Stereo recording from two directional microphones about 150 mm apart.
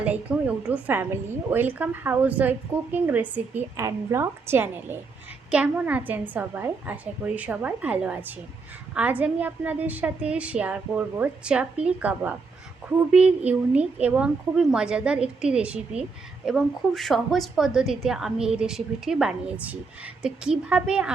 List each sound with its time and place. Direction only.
0.0 s a woman's voice: 10° right (ahead or behind)